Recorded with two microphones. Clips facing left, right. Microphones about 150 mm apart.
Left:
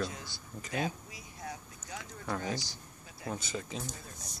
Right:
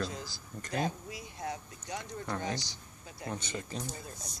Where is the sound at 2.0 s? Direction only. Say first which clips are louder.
Even; 5° left (ahead or behind).